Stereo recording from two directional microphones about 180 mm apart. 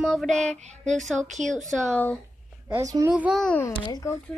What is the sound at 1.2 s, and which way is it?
Speech, 40° right (ahead or behind).